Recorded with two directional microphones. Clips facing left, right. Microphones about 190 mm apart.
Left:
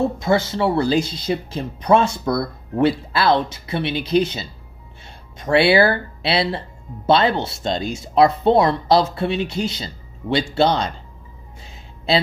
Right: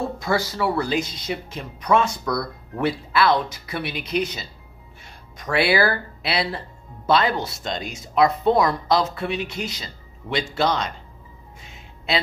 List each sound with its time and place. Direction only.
0.2 s speech: 25° left (ahead or behind)
11.6 s music: 30° left (ahead or behind)